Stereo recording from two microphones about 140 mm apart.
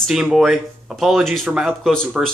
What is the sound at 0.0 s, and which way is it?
Speech, 5° right (ahead or behind).